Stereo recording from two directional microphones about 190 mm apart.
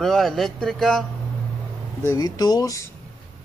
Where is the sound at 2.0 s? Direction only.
15° left (ahead or behind).